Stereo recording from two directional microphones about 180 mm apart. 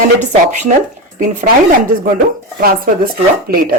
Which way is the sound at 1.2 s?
40° right (ahead or behind).